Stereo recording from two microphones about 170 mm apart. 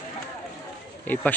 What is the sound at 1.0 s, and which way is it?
Speech, 10° left (ahead or behind).